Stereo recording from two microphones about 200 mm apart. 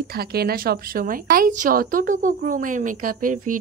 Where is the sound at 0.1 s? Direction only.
50° right (ahead or behind).